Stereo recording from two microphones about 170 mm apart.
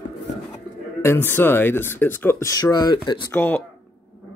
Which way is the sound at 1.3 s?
10° left (ahead or behind).